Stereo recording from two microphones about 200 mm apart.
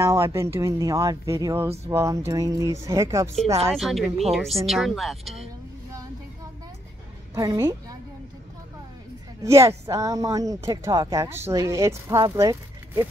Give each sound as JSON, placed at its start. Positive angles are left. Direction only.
{"t": 0.0, "sound": "speech", "side_deg": -15}
{"t": 3.7, "sound": "speech", "side_deg": 0}
{"t": 7.3, "sound": "speech", "side_deg": -15}
{"t": 9.4, "sound": "speech", "side_deg": -15}